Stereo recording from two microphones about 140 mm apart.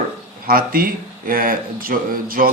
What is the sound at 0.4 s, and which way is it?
Speech, 90° right.